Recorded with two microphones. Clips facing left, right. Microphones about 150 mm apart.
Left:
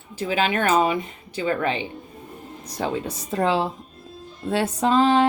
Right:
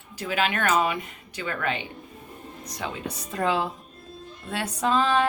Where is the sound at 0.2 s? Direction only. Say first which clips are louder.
Left 4 dB; 30° left (ahead or behind).